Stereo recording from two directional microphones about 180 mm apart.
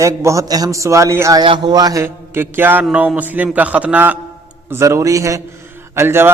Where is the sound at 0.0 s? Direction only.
15° right (ahead or behind).